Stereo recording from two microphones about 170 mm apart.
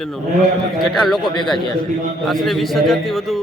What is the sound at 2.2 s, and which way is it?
Speech, centre (ahead or behind).